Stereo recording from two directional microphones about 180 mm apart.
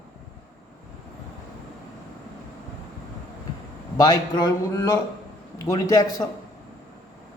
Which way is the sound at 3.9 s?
20° left (ahead or behind).